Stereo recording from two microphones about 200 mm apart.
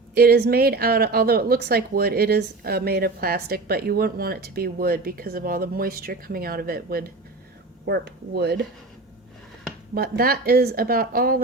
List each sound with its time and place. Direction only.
0.1 s speech: 50° right (ahead or behind)
9.9 s speech: 50° right (ahead or behind)